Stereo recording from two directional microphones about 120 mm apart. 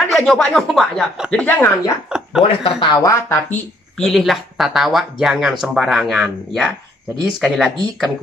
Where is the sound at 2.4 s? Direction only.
50° left (ahead or behind).